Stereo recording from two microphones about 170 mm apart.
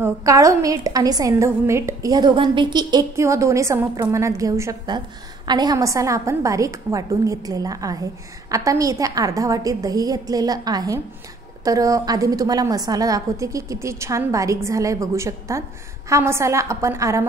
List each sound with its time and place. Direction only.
0.0 s a woman's voice: 20° right (ahead or behind)